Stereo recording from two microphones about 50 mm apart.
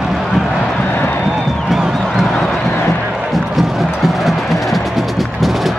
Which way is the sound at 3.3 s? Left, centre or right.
Centre.